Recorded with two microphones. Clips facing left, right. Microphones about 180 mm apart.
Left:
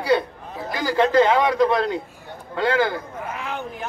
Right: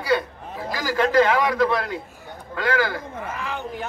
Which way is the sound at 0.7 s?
25° left (ahead or behind).